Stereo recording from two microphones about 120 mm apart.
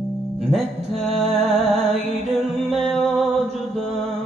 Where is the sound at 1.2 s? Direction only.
60° right (ahead or behind).